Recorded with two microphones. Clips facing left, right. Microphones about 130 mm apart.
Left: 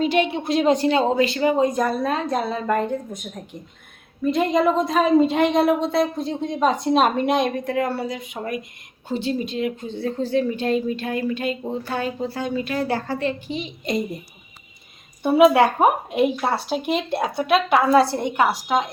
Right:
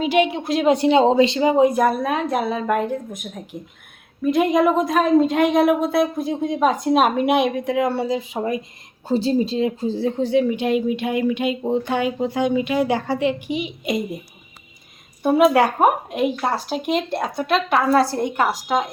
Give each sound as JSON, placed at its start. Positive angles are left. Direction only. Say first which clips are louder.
{"t": 0.0, "sound": "speech", "louder": "right 2 dB", "side_deg": -10}
{"t": 4.2, "sound": "speech", "louder": "right 2 dB", "side_deg": -5}
{"t": 9.0, "sound": "speech", "louder": "right 5 dB", "side_deg": -35}
{"t": 10.1, "sound": "speech", "louder": "right 2 dB", "side_deg": -15}
{"t": 15.2, "sound": "speech", "louder": "left 1 dB", "side_deg": 0}